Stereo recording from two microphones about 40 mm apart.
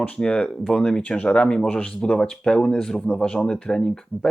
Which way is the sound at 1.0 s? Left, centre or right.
Left.